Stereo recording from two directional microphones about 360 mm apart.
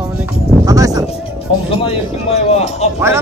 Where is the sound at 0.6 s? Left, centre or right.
Centre.